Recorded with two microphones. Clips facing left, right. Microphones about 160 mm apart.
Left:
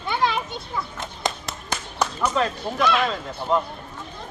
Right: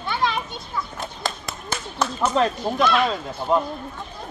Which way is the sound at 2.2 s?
20° right (ahead or behind).